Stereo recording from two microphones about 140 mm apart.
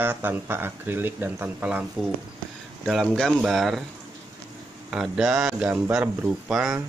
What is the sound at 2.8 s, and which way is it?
A man's voice, centre (ahead or behind).